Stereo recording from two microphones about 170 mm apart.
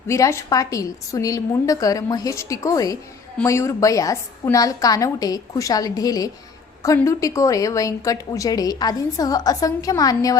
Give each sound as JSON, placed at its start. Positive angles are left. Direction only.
{"t": 0.1, "sound": "a woman's voice", "side_deg": 15}